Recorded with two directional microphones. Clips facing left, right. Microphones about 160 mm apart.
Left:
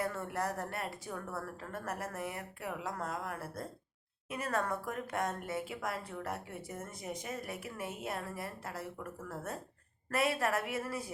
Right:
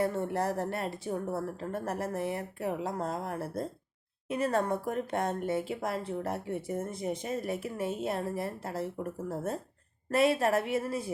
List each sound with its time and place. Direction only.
0.0 s speech: 30° right (ahead or behind)